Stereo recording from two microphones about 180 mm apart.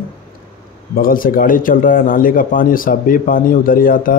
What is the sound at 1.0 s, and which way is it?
A man's voice, 50° left (ahead or behind).